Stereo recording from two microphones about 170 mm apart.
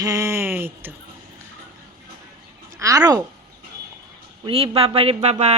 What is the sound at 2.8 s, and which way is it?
Speech, 20° right (ahead or behind).